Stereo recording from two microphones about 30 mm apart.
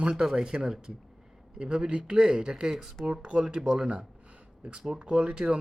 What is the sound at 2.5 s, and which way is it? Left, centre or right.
Speech, right.